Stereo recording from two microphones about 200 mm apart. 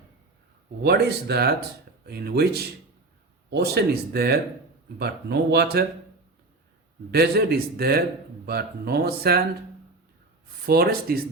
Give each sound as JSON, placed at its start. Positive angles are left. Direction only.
{"t": 0.8, "sound": "a man's voice", "side_deg": -55}
{"t": 7.1, "sound": "a man's voice", "side_deg": -50}
{"t": 10.7, "sound": "a man's voice", "side_deg": -50}